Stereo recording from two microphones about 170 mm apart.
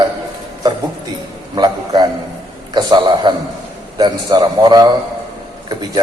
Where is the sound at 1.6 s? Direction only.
25° right (ahead or behind).